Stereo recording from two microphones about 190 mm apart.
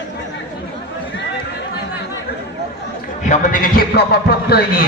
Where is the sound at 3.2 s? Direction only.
40° left (ahead or behind).